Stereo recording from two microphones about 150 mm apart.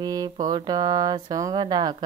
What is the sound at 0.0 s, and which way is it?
Speech, 25° right (ahead or behind).